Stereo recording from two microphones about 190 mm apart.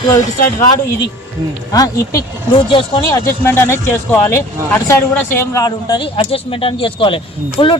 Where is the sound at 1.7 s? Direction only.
15° left (ahead or behind).